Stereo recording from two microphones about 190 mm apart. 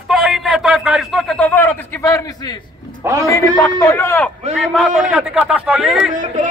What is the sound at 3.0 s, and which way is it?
Speech, 15° right (ahead or behind).